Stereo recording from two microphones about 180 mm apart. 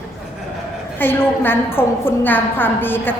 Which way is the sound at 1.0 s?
10° left (ahead or behind).